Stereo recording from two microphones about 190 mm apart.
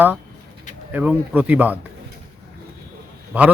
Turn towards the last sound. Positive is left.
turn(degrees=-5)  # may be behind; listen again after turning